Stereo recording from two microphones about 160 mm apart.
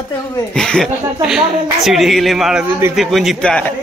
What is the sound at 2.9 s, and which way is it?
Speech, centre (ahead or behind).